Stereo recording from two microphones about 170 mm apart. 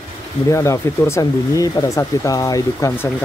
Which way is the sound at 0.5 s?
15° left (ahead or behind).